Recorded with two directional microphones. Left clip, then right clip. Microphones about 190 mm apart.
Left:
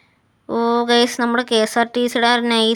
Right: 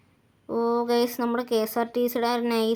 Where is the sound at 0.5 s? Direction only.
15° left (ahead or behind).